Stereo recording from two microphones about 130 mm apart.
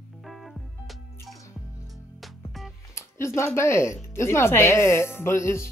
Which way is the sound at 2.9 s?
20° left (ahead or behind).